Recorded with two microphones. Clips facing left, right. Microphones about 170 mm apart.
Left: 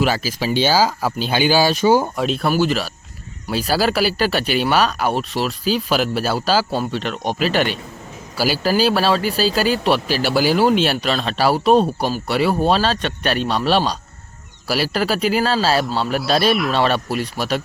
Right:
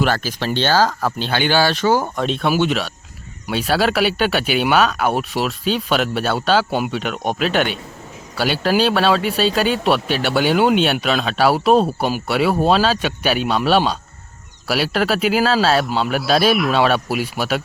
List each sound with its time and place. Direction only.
0.0 s speech: 5° left (ahead or behind)
6.7 s speech: 15° right (ahead or behind)
6.9 s speech: centre (ahead or behind)